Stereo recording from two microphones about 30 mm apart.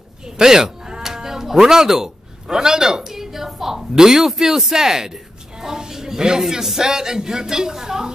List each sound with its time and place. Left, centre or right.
0.4 s speech: right
5.6 s a sound: centre
6.8 s a woman's voice: centre